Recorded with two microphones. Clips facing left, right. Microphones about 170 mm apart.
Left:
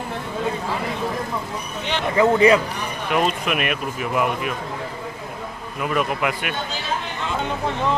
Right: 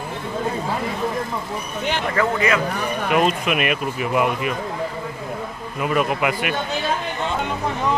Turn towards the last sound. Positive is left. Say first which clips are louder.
# right 2 dB
turn(degrees=0)  # may be behind; listen again after turning